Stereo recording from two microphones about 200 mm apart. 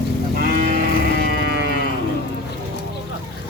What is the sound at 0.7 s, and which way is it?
Music, 50° right (ahead or behind).